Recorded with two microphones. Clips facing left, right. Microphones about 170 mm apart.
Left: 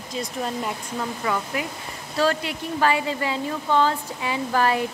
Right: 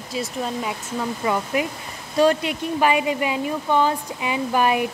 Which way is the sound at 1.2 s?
20° right (ahead or behind).